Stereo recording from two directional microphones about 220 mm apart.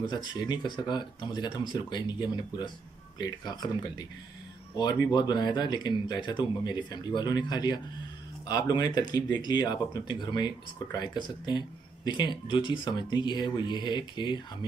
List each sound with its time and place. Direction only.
0.0 s speech: 20° left (ahead or behind)